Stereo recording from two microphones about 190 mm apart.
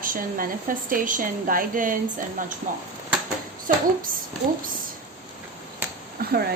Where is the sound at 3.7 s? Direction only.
45° right (ahead or behind).